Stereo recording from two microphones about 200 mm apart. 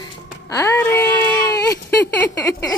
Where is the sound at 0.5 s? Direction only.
15° left (ahead or behind).